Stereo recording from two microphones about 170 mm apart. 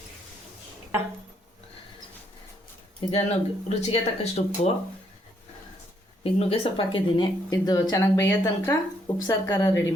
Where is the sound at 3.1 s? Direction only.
35° left (ahead or behind).